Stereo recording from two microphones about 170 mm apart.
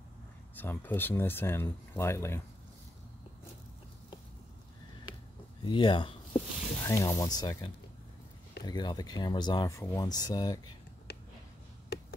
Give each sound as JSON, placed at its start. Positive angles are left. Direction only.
{"t": 0.6, "sound": "speech", "side_deg": 10}
{"t": 5.6, "sound": "speech", "side_deg": 30}
{"t": 6.8, "sound": "speech", "side_deg": 15}
{"t": 11.1, "sound": "a sound", "side_deg": 70}